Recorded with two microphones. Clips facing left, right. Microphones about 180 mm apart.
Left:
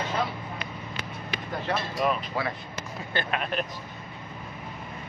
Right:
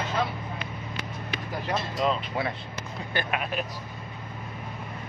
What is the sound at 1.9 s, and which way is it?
Speech, 25° right (ahead or behind).